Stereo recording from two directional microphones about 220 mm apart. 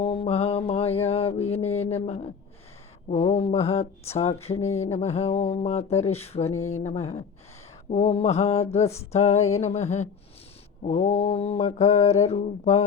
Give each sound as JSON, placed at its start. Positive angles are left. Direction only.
{"t": 0.0, "sound": "mantra", "side_deg": 25}
{"t": 9.1, "sound": "a sound", "side_deg": 30}
{"t": 10.8, "sound": "mantra", "side_deg": 30}